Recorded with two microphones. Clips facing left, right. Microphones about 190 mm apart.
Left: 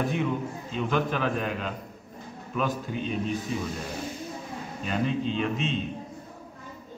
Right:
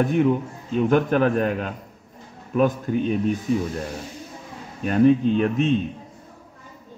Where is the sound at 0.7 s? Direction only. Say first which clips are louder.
Right 9 dB; 50° right (ahead or behind).